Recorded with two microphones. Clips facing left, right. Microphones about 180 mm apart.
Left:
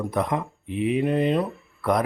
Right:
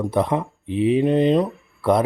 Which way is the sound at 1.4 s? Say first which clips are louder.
Right 4 dB; 30° right (ahead or behind).